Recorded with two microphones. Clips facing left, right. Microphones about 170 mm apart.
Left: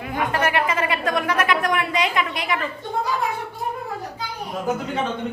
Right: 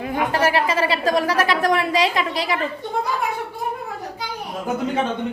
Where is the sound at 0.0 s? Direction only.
30° right (ahead or behind).